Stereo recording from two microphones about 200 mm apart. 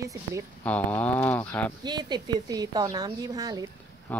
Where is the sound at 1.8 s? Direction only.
20° right (ahead or behind).